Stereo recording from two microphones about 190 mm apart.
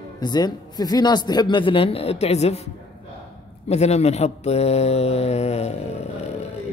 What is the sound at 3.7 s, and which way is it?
A man's voice, 35° left (ahead or behind).